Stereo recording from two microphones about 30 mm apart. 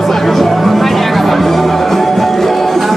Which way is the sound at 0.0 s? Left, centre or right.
Centre.